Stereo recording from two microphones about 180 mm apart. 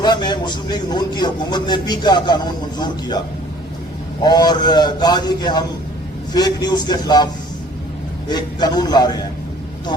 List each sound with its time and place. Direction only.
0.0 s a man's voice: 25° left (ahead or behind)
4.2 s a man's voice: 20° left (ahead or behind)
8.3 s a man's voice: 25° left (ahead or behind)